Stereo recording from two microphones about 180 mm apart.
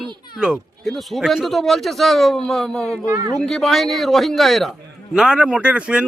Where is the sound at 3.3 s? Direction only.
Centre (ahead or behind).